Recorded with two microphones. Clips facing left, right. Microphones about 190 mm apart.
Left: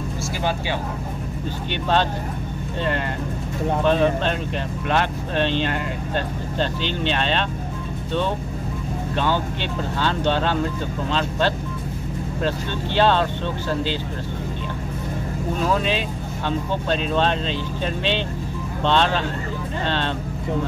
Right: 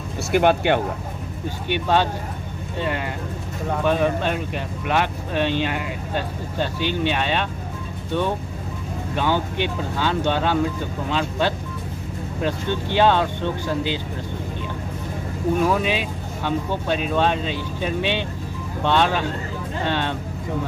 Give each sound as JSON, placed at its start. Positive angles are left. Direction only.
{"t": 0.3, "sound": "speech", "side_deg": -60}
{"t": 1.7, "sound": "speech", "side_deg": -10}
{"t": 3.8, "sound": "speech", "side_deg": -10}
{"t": 9.1, "sound": "speech", "side_deg": -15}
{"t": 15.6, "sound": "speech", "side_deg": -10}